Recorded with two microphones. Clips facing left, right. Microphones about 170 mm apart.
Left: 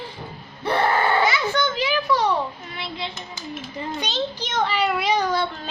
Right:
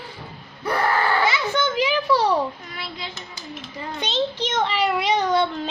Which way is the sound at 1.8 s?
15° right (ahead or behind).